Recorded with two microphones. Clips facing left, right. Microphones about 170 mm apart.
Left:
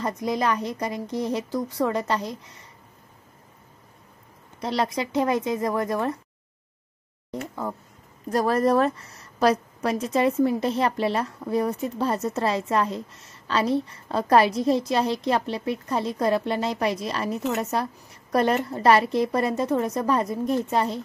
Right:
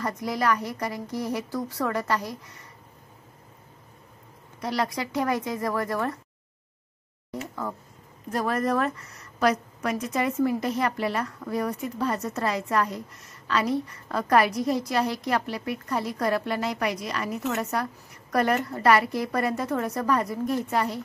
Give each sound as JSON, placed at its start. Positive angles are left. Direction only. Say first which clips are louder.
{"t": 0.0, "sound": "a woman's voice", "louder": "left 2 dB", "side_deg": 20}
{"t": 4.6, "sound": "a woman's voice", "louder": "left 2 dB", "side_deg": 25}
{"t": 8.3, "sound": "a woman's voice", "louder": "left 5 dB", "side_deg": 35}